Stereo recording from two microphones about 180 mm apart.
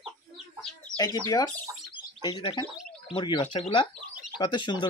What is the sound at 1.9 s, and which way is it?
Bird, 25° left (ahead or behind).